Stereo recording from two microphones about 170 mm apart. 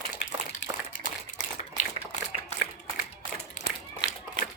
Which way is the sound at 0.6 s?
90° left.